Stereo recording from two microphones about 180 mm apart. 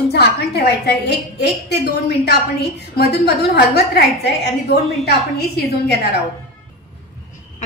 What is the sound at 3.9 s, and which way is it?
A woman's voice, 65° left (ahead or behind).